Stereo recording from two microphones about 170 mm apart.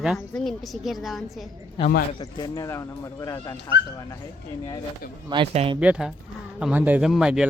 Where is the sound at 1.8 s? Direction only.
25° left (ahead or behind).